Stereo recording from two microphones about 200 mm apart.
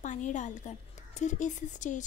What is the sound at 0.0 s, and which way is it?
A woman's voice, 40° left (ahead or behind).